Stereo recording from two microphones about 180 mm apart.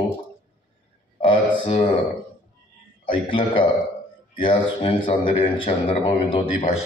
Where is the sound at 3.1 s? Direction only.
30° left (ahead or behind).